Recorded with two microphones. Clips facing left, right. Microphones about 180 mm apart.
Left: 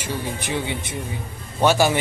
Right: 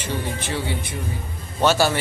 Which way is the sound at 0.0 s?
15° left (ahead or behind).